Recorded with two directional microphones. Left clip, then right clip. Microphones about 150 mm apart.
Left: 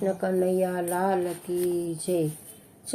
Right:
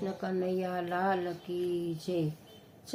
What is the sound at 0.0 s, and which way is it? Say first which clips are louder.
Speech: left 9 dB; 5° left (ahead or behind).